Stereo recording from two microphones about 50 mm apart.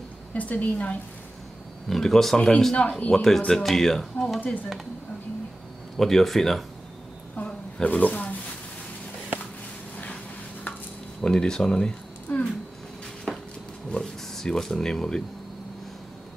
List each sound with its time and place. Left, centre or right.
0.3 s a woman's voice: left
1.9 s a woman's voice: centre; by 3.1 s left
3.1 s speech: centre
5.9 s speech: centre
7.3 s a sound: left
11.2 s speech: centre
12.3 s a sound: left
13.3 s a sound: centre
13.8 s speech: centre